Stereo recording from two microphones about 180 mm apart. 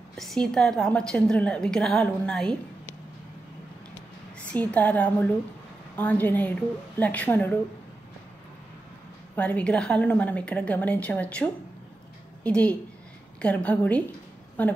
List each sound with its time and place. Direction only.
0.1 s a woman's voice: centre (ahead or behind)
4.5 s a woman's voice: 5° left (ahead or behind)
9.3 s a woman's voice: 10° left (ahead or behind)